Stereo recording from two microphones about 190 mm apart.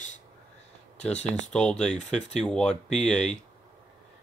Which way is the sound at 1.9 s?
35° left (ahead or behind).